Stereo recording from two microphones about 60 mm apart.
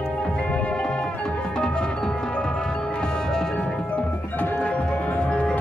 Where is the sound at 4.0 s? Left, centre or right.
Left.